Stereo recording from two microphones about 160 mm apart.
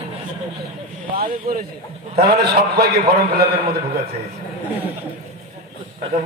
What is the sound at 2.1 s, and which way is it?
A man's voice, 90° right.